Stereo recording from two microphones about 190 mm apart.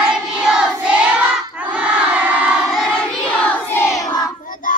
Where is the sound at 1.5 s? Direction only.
5° right (ahead or behind).